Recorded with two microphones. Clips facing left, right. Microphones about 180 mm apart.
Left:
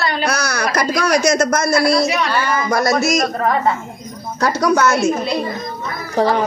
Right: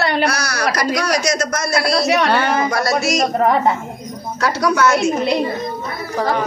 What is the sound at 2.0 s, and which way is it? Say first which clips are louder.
Speech: right 3 dB; 70° right (ahead or behind).